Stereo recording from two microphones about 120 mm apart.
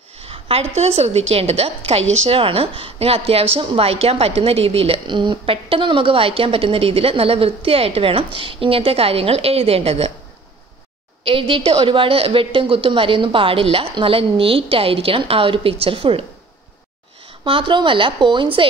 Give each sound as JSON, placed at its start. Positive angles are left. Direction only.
{"t": 0.2, "sound": "a woman's voice", "side_deg": -55}
{"t": 11.2, "sound": "a woman's voice", "side_deg": -50}
{"t": 17.5, "sound": "a woman's voice", "side_deg": -45}